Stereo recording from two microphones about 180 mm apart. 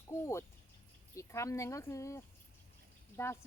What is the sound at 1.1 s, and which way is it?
A woman's voice, 15° left (ahead or behind).